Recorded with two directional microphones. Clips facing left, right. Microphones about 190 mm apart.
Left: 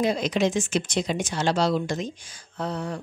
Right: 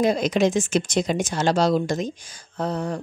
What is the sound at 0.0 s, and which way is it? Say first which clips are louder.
Speech: right 3 dB; 45° right (ahead or behind).